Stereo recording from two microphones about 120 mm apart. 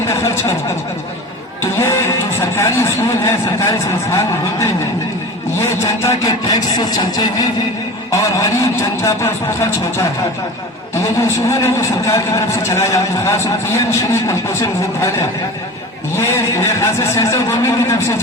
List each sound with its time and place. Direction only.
1.8 s music: 20° left (ahead or behind)
3.2 s a man's voice: 25° left (ahead or behind)
5.5 s a man's voice: 25° left (ahead or behind)
11.2 s a man's voice: 25° left (ahead or behind)
16.1 s a man's voice: 25° left (ahead or behind)